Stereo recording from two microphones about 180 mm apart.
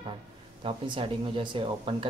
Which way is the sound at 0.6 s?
30° right (ahead or behind).